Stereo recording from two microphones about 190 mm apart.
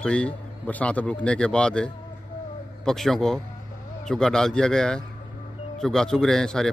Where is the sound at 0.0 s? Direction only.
5° left (ahead or behind).